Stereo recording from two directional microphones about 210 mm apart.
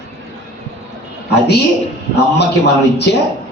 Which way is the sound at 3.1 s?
55° left (ahead or behind).